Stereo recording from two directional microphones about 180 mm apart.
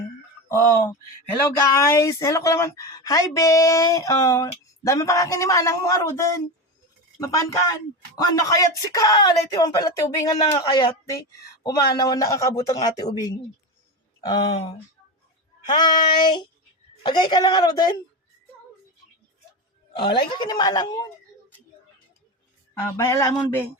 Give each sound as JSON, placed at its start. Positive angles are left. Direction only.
{"t": 0.4, "sound": "a woman's voice", "side_deg": 15}
{"t": 19.9, "sound": "a woman's voice", "side_deg": 30}
{"t": 22.7, "sound": "a woman's voice", "side_deg": 15}